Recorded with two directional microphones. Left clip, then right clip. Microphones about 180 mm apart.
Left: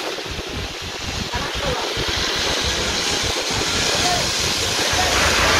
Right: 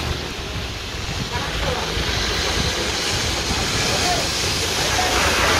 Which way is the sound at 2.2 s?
40° right (ahead or behind).